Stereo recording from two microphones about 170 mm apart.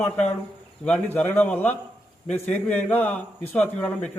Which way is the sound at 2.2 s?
40° left (ahead or behind).